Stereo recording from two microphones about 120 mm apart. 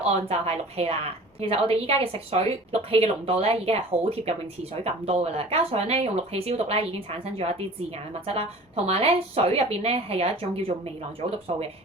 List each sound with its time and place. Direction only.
0.0 s speech: 60° right (ahead or behind)